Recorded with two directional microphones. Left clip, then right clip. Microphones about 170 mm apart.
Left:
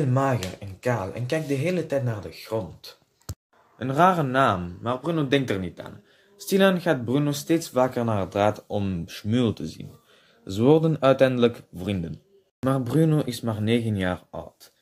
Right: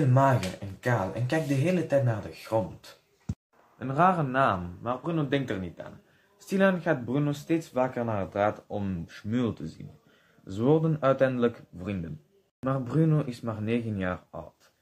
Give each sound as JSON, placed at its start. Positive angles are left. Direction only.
{"t": 0.7, "sound": "speech", "side_deg": 50}
{"t": 3.8, "sound": "a man's voice", "side_deg": 35}